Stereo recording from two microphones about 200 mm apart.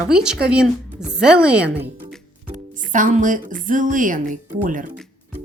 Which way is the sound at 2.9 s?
40° right (ahead or behind).